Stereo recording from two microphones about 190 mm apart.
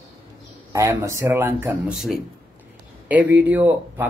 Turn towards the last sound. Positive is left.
turn(degrees=-10)  # may be behind; listen again after turning